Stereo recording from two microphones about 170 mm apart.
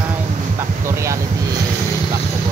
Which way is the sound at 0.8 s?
15° right (ahead or behind).